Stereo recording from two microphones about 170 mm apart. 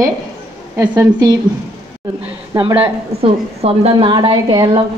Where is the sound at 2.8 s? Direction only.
35° right (ahead or behind).